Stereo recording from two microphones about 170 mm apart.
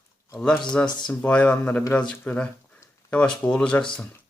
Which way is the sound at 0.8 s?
10° left (ahead or behind).